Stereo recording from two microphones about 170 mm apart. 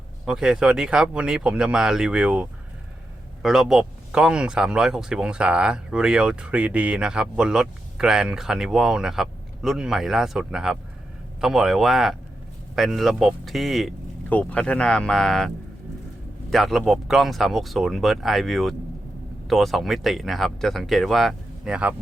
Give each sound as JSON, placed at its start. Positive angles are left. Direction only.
{"t": 0.3, "sound": "speech", "side_deg": -5}